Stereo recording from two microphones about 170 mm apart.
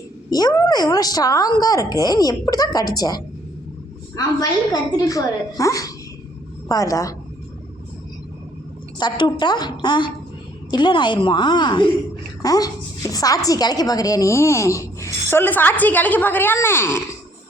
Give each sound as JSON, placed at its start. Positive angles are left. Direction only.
{"t": 0.3, "sound": "a woman's voice", "side_deg": 20}
{"t": 9.0, "sound": "a woman's voice", "side_deg": 25}